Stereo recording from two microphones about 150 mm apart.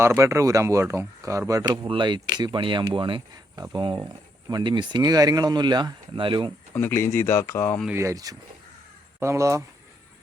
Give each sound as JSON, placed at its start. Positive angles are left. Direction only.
{"t": 0.0, "sound": "speech", "side_deg": -20}
{"t": 6.7, "sound": "speech", "side_deg": 15}
{"t": 7.9, "sound": "speech", "side_deg": -20}